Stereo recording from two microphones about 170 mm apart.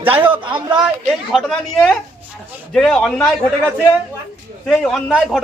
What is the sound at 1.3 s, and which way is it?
A man's voice, centre (ahead or behind).